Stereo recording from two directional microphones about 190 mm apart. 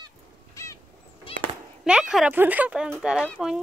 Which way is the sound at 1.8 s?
5° right (ahead or behind).